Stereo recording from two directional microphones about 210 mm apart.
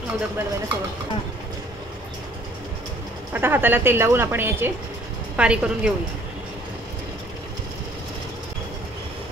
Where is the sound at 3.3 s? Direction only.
10° right (ahead or behind).